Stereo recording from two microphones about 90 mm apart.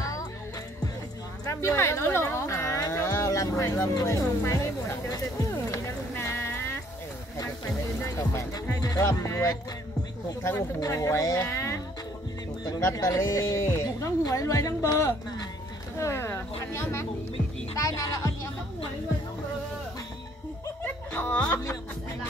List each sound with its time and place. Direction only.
0.0 s music: 40° left (ahead or behind)
1.4 s a sound: 35° left (ahead or behind)
6.1 s music: 25° left (ahead or behind)
8.0 s speech: 40° left (ahead or behind)
10.8 s speech: 40° left (ahead or behind)
12.8 s speech: 40° left (ahead or behind)
16.0 s speech: 30° left (ahead or behind)
17.7 s music: 40° left (ahead or behind)
20.8 s music: 20° left (ahead or behind)